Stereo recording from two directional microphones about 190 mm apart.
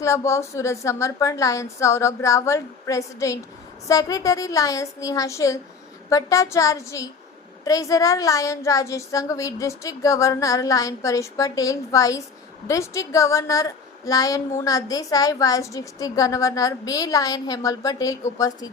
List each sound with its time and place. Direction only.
0.0 s a woman's voice: 15° left (ahead or behind)